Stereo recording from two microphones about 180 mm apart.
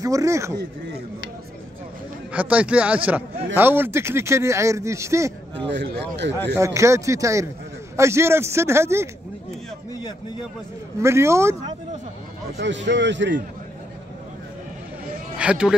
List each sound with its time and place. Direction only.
0.0 s speech: 20° right (ahead or behind)
2.3 s speech: 5° right (ahead or behind)
5.7 s speech: 80° right
6.6 s speech: 15° right (ahead or behind)
11.0 s speech: 15° right (ahead or behind)
12.5 s speech: 85° right
15.3 s a man's voice: 5° right (ahead or behind)